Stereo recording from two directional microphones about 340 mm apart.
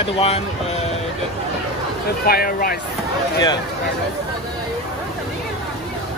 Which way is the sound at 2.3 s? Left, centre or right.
Left.